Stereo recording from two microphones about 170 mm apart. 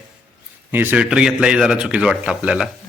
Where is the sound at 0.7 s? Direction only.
10° right (ahead or behind).